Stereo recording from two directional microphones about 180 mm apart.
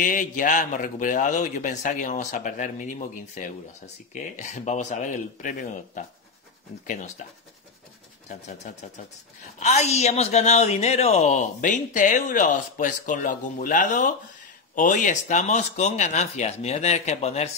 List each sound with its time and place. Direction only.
0.0 s a man's voice: 50° left (ahead or behind)
7.2 s speech: 40° left (ahead or behind)